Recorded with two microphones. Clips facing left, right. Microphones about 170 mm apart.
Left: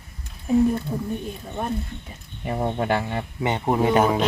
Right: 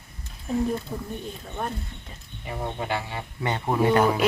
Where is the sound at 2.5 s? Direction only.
50° left (ahead or behind).